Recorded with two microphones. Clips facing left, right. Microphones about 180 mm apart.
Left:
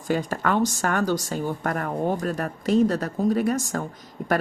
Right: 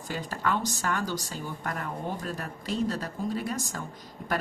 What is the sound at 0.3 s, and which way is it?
Speech, 50° left (ahead or behind).